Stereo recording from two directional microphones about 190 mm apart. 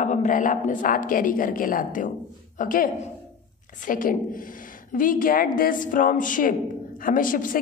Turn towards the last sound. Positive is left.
turn(degrees=45)  # may be behind; listen again after turning